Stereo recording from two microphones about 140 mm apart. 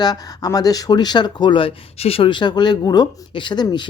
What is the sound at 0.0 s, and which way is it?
Speech, 25° left (ahead or behind).